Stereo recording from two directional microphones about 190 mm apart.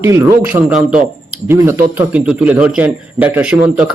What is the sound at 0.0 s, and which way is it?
A man's voice, 15° right (ahead or behind).